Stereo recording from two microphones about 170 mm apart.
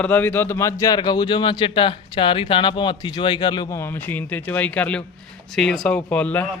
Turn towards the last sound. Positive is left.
turn(degrees=10)  # may be behind; listen again after turning